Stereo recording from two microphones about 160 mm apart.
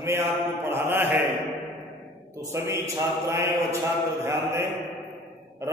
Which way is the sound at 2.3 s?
20° right (ahead or behind).